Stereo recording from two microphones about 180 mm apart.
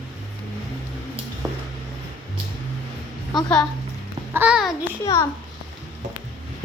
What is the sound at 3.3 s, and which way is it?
Speech, centre (ahead or behind).